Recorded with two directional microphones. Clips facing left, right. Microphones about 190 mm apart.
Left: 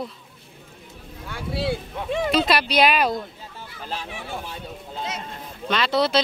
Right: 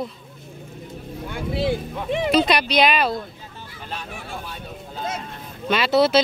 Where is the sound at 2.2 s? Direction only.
Centre (ahead or behind).